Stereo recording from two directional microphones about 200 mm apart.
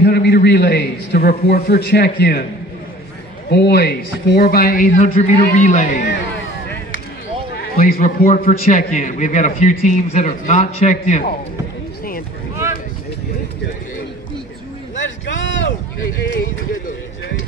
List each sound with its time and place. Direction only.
0.0 s a man's voice: 55° left (ahead or behind)
3.4 s speech: 55° left (ahead or behind)
7.5 s a man's voice: 50° left (ahead or behind)
15.0 s a sound: 65° left (ahead or behind)